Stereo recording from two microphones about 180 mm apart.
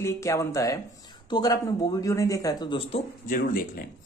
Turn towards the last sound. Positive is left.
turn(degrees=50)  # may be behind; listen again after turning